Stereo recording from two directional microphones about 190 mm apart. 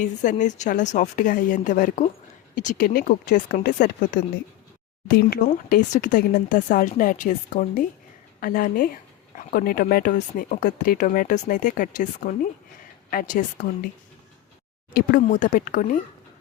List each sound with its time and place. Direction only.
0.0 s a woman's voice: 40° left (ahead or behind)
14.9 s speech: 45° left (ahead or behind)